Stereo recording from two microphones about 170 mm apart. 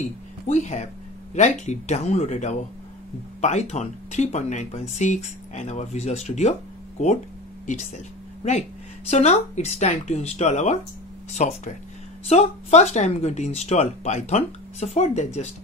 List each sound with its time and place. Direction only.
0.5 s speech: 45° left (ahead or behind)
9.1 s speech: 40° left (ahead or behind)